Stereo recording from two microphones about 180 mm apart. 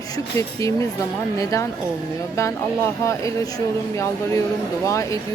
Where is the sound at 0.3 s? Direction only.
15° left (ahead or behind).